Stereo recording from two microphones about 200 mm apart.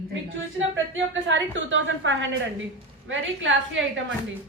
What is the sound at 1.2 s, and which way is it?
Speech, 70° right (ahead or behind).